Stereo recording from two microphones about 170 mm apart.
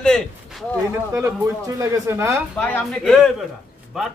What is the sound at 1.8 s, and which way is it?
Speech, 15° right (ahead or behind).